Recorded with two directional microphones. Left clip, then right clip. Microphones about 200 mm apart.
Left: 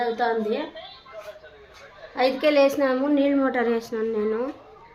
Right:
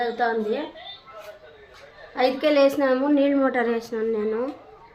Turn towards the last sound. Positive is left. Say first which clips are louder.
# even
turn(degrees=-5)  # may be behind; listen again after turning